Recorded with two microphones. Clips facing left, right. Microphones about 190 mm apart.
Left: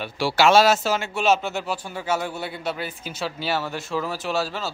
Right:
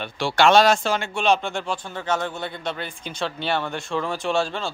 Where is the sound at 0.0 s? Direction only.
5° left (ahead or behind).